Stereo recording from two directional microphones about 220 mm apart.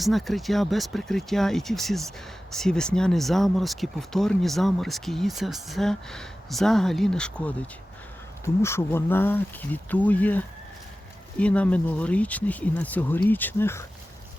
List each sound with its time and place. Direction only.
0.0 s speech: centre (ahead or behind)